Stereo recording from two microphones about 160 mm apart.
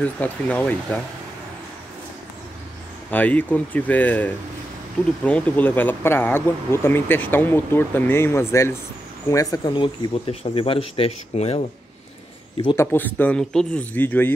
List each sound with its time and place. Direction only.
0.0 s speech: 10° left (ahead or behind)
3.1 s speech: 10° left (ahead or behind); by 11.6 s 40° left (ahead or behind)
12.7 s speech: 10° left (ahead or behind)